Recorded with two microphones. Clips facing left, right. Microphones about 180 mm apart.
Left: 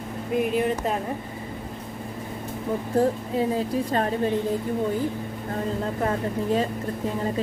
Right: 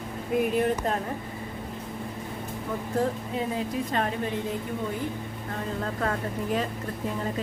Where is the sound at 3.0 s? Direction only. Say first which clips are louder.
Left 6 dB; 30° left (ahead or behind).